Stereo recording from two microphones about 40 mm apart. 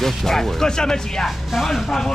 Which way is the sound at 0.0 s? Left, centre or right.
Centre.